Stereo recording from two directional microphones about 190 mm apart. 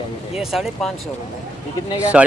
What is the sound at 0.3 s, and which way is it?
Speech, centre (ahead or behind).